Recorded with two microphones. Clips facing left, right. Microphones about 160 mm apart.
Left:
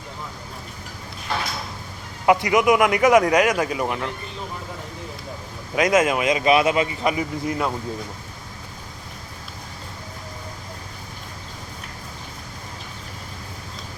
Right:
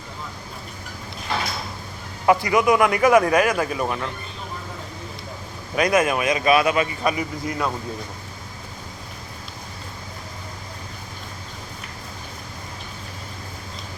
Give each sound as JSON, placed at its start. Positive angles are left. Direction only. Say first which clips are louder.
{"t": 2.2, "sound": "speech", "louder": "left 1 dB", "side_deg": 20}
{"t": 5.7, "sound": "speech", "louder": "left 1 dB", "side_deg": 20}